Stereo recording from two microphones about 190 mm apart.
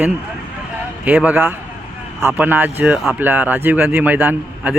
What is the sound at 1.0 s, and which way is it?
Speech, 10° right (ahead or behind).